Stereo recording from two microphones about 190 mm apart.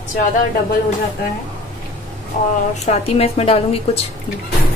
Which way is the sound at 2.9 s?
35° left (ahead or behind).